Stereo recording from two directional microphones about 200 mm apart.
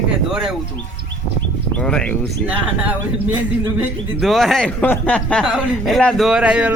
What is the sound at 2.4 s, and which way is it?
A man's voice, 10° right (ahead or behind).